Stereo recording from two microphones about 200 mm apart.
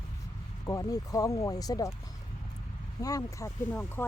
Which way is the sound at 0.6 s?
15° left (ahead or behind).